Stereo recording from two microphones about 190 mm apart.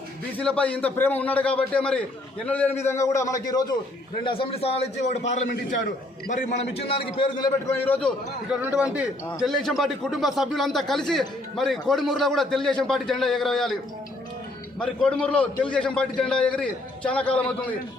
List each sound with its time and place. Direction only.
0.3 s a man's voice: 5° left (ahead or behind)
8.4 s a man's voice: 5° right (ahead or behind)
14.8 s a man's voice: 5° left (ahead or behind)